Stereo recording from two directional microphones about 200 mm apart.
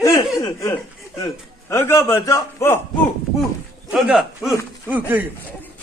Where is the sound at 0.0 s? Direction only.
15° left (ahead or behind).